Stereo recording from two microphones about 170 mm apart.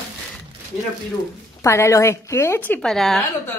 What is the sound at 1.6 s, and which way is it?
Speech, 15° left (ahead or behind).